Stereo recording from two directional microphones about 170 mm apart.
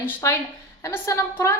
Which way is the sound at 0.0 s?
15° left (ahead or behind).